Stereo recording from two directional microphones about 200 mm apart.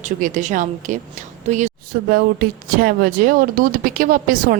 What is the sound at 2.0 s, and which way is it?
A woman's voice, 50° right (ahead or behind).